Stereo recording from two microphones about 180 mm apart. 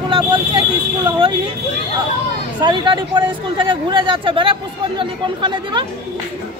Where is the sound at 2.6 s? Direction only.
25° right (ahead or behind).